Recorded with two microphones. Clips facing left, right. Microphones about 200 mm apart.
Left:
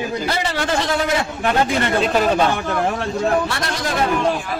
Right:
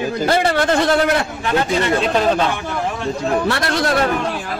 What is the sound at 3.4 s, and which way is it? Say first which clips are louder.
Speech: right 5 dB; 65° right (ahead or behind).